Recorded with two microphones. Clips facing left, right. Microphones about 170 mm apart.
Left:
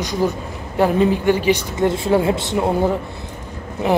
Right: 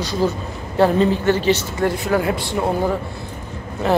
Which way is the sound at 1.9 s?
25° left (ahead or behind).